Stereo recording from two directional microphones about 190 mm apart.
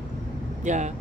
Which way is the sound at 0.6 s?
40° right (ahead or behind).